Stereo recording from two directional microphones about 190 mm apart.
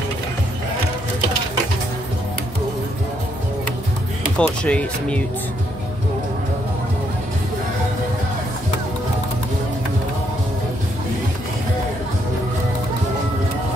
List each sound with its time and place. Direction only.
4.4 s speech: 5° left (ahead or behind)